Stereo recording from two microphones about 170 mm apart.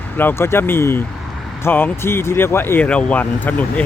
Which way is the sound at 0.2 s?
15° left (ahead or behind).